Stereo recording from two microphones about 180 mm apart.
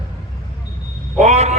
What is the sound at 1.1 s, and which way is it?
Speech, 40° right (ahead or behind).